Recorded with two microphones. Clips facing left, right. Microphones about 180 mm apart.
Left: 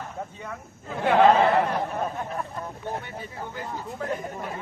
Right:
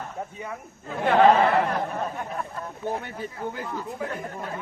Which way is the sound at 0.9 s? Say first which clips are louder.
Even; 5° left (ahead or behind).